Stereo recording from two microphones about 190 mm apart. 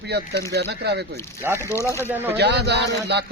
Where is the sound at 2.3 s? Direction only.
60° right (ahead or behind).